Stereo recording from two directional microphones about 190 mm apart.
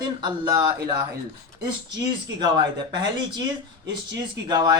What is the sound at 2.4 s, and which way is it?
A woman's voice, 25° right (ahead or behind).